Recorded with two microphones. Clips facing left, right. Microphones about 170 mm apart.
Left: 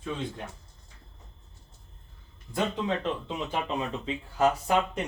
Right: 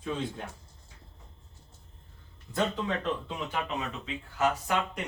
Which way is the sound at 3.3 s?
25° left (ahead or behind).